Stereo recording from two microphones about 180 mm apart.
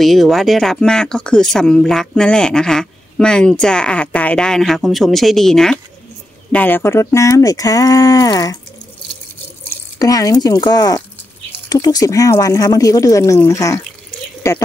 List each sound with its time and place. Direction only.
0.0 s speech: centre (ahead or behind); by 8.5 s 20° left (ahead or behind)
9.9 s speech: 20° left (ahead or behind)